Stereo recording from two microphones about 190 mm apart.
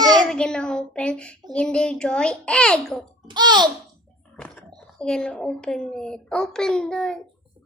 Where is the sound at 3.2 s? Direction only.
20° right (ahead or behind).